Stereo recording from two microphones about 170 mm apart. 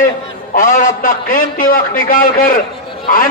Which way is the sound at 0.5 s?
50° left (ahead or behind).